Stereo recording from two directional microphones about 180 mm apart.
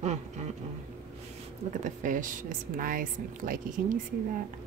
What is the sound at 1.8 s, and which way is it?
Speech, 45° right (ahead or behind).